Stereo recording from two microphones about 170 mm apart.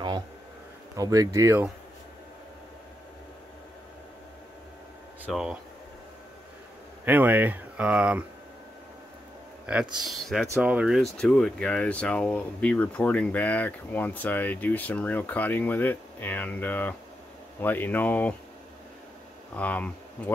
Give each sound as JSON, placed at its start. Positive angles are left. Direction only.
{"t": 0.9, "sound": "speech", "side_deg": -20}
{"t": 5.2, "sound": "speech", "side_deg": -5}
{"t": 7.1, "sound": "speech", "side_deg": -10}
{"t": 9.7, "sound": "speech", "side_deg": -5}
{"t": 19.5, "sound": "speech", "side_deg": 10}